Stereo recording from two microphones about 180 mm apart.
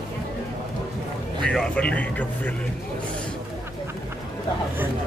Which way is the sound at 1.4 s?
5° left (ahead or behind).